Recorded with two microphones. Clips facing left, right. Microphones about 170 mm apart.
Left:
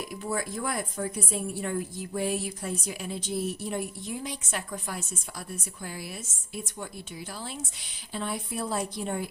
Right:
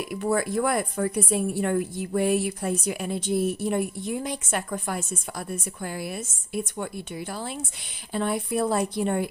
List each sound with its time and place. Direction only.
0.1 s a woman's voice: 65° right (ahead or behind)